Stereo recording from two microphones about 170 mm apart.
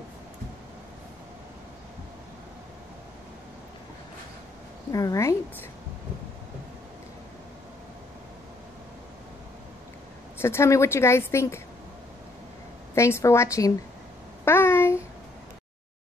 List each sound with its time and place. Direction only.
4.9 s a woman's voice: 20° left (ahead or behind)
10.4 s a woman's voice: 15° left (ahead or behind)
12.9 s a woman's voice: 15° left (ahead or behind)
14.4 s a sound: 15° left (ahead or behind)